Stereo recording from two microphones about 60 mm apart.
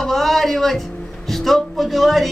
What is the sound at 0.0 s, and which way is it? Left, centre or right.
A man's voice, centre.